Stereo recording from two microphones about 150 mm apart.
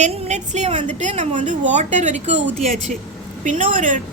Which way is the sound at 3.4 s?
60° right (ahead or behind).